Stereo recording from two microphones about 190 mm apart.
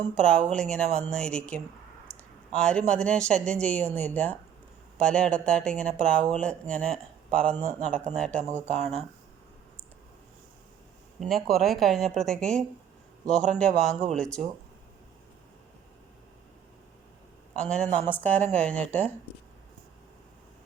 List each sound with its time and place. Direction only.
0.0 s speech: 5° left (ahead or behind)
8.5 s speech: 40° right (ahead or behind)
11.2 s speech: centre (ahead or behind)
17.5 s a man's voice: 5° left (ahead or behind)